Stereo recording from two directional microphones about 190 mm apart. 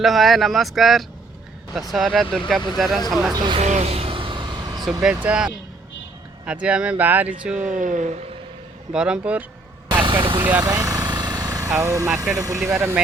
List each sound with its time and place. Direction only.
0.0 s speech: centre (ahead or behind)
3.4 s speech: 25° right (ahead or behind)
3.7 s a sound: 35° right (ahead or behind)
4.9 s speech: 5° right (ahead or behind)
7.5 s speech: 40° right (ahead or behind)
8.9 s speech: 5° right (ahead or behind)
9.9 s vehicle: 25° right (ahead or behind)
10.6 s speech: 20° right (ahead or behind)